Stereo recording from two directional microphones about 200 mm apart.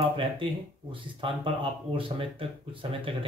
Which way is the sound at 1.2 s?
25° right (ahead or behind).